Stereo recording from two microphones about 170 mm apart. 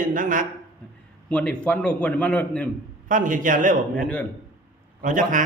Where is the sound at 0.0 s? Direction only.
50° right (ahead or behind).